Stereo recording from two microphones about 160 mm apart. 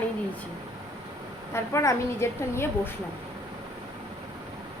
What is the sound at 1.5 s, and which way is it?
A woman's voice, 20° left (ahead or behind).